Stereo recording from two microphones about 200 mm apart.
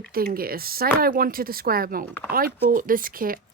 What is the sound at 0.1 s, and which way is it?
Speech, 50° right (ahead or behind).